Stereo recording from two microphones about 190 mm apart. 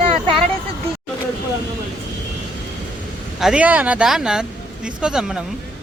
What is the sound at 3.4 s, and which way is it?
Speech, 5° right (ahead or behind).